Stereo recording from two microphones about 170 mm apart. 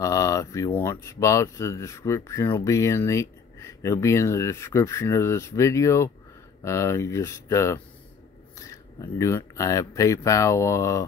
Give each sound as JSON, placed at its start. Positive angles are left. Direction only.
{"t": 0.0, "sound": "a sound", "side_deg": 20}
{"t": 0.7, "sound": "speech", "side_deg": 15}
{"t": 9.2, "sound": "speech", "side_deg": 20}